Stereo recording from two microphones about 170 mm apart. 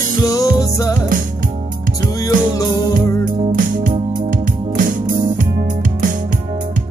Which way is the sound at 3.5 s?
50° right (ahead or behind).